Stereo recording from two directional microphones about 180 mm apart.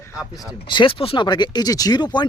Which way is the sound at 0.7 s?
25° left (ahead or behind).